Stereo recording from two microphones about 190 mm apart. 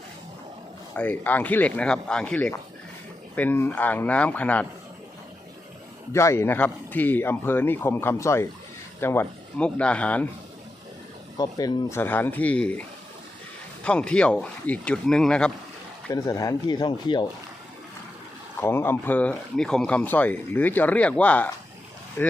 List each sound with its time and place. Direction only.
0.9 s speech: 10° left (ahead or behind)
6.1 s speech: 15° left (ahead or behind)
11.3 s speech: 20° left (ahead or behind)
13.8 s speech: 5° left (ahead or behind)
16.1 s speech: 20° left (ahead or behind)
18.6 s speech: 10° left (ahead or behind)